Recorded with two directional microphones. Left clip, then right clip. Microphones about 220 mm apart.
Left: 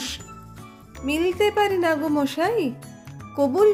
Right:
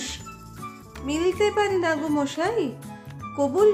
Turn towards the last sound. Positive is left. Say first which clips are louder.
# left 2 dB
turn(degrees=15)  # may be behind; listen again after turning